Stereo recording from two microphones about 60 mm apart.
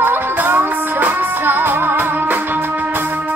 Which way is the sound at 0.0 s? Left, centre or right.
Right.